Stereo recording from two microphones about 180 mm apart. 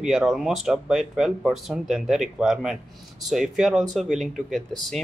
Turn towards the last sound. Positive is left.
turn(degrees=0)  # may be behind; listen again after turning